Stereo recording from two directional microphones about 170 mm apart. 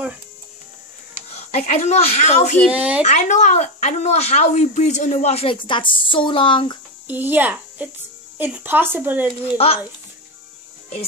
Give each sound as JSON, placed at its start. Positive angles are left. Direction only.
{"t": 1.3, "sound": "speech", "side_deg": 40}
{"t": 2.7, "sound": "speech", "side_deg": -5}
{"t": 3.0, "sound": "speech", "side_deg": 45}
{"t": 7.1, "sound": "a child's voice", "side_deg": -10}
{"t": 9.4, "sound": "speech", "side_deg": 35}